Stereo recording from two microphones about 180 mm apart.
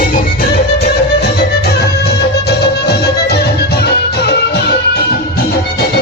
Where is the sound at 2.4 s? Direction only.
65° left (ahead or behind).